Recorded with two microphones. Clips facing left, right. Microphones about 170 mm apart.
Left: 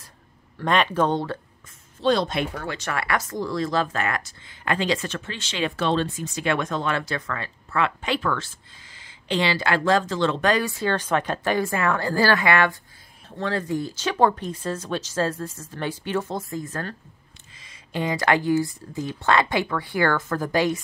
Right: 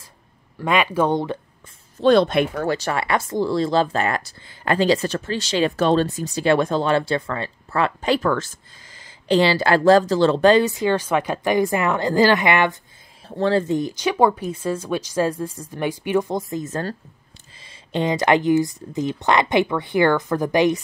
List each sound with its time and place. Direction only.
0.6 s speech: 10° right (ahead or behind)
2.0 s speech: 55° right (ahead or behind)
2.7 s speech: 30° right (ahead or behind)
10.8 s speech: 10° right (ahead or behind)
13.4 s speech: 30° right (ahead or behind)